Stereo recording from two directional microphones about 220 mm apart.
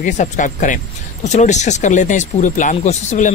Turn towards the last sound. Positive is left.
turn(degrees=30)  # may be behind; listen again after turning